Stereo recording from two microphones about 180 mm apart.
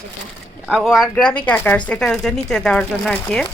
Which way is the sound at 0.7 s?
Centre (ahead or behind).